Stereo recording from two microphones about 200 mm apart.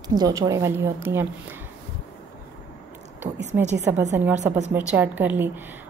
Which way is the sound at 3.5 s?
10° right (ahead or behind).